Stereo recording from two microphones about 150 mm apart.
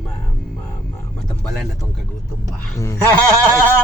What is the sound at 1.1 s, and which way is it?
Speech, 5° left (ahead or behind).